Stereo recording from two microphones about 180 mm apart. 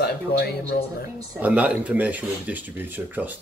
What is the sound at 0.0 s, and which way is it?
Speech, 65° left (ahead or behind).